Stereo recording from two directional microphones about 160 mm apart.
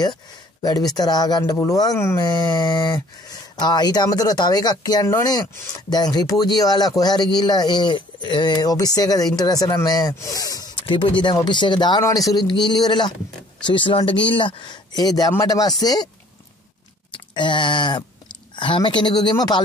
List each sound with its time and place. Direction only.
0.0 s speech: 25° left (ahead or behind)
17.1 s a sound: 30° left (ahead or behind)
18.6 s speech: 30° left (ahead or behind)